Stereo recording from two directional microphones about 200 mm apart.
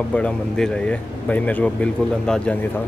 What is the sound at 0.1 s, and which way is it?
Speech, 5° left (ahead or behind).